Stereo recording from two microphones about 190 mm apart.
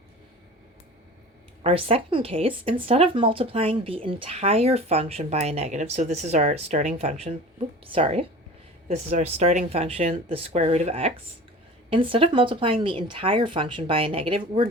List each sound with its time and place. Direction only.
1.6 s speech: 30° right (ahead or behind)